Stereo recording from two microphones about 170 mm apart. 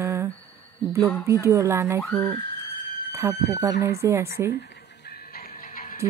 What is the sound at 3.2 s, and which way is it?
Speech, 15° right (ahead or behind).